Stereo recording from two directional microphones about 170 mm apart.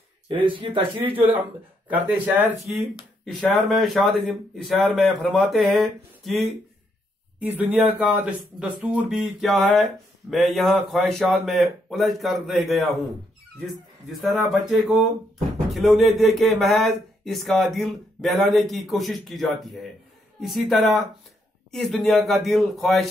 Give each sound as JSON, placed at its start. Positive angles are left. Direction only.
{"t": 0.3, "sound": "speech", "side_deg": -30}
{"t": 1.1, "sound": "speech", "side_deg": -10}
{"t": 2.8, "sound": "speech", "side_deg": 5}
{"t": 15.7, "sound": "speech", "side_deg": 0}